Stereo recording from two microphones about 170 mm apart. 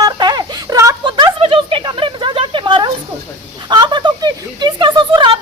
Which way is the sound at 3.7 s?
25° right (ahead or behind).